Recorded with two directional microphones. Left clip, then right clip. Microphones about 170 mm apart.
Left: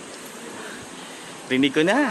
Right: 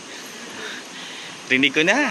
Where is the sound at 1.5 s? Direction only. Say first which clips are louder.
Right 3 dB; 20° left (ahead or behind).